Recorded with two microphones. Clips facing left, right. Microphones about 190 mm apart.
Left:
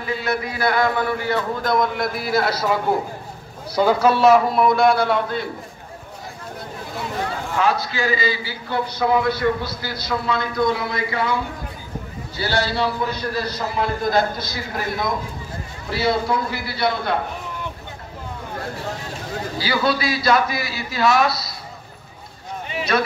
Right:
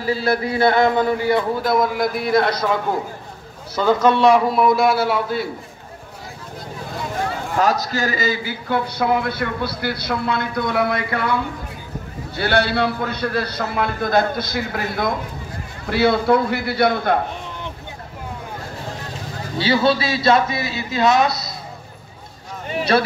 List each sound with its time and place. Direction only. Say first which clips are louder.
0.0 s a man's voice: right 4 dB; 30° right (ahead or behind); by 2.7 s 5° left (ahead or behind)
3.7 s a man's voice: right 1 dB; 10° left (ahead or behind)
7.5 s a man's voice: right 2 dB; 40° right (ahead or behind); by 11.3 s 60° right (ahead or behind)
12.4 s a man's voice: right 3 dB; 60° right (ahead or behind)
19.6 s a man's voice: right 4 dB; 25° right (ahead or behind)
22.9 s speech: right 3 dB; 30° right (ahead or behind)